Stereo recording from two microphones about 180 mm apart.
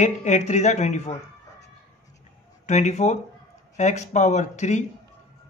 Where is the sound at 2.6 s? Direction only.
40° left (ahead or behind).